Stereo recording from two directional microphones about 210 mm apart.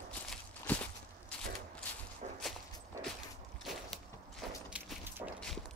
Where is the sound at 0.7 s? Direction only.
5° left (ahead or behind).